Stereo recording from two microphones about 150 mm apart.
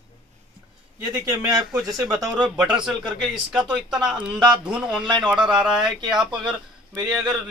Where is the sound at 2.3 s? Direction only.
5° right (ahead or behind).